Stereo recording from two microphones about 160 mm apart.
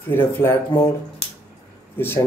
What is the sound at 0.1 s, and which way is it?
Speech, 15° left (ahead or behind).